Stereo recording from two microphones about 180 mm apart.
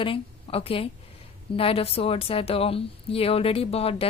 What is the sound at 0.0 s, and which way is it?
A woman's voice, 30° left (ahead or behind).